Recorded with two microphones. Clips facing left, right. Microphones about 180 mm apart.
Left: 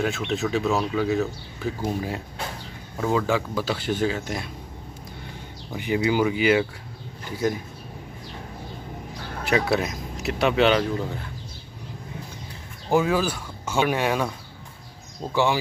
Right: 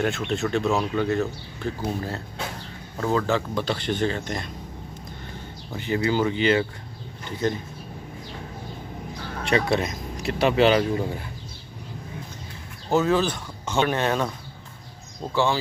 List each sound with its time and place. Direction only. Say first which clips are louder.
0.0 s speech: even; centre (ahead or behind)
5.7 s speech: left 1 dB; 15° left (ahead or behind)
9.4 s speech: even; 5° left (ahead or behind)
12.9 s speech: even; 10° left (ahead or behind)
15.3 s speech: left 1 dB; 15° left (ahead or behind)